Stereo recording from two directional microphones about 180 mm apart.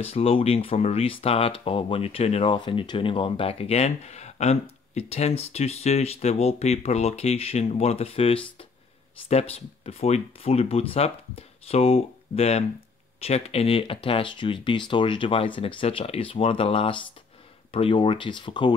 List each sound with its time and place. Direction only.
0.0 s speech: 35° left (ahead or behind)